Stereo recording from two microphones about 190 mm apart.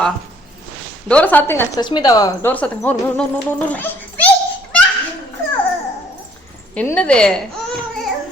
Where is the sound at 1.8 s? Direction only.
20° left (ahead or behind).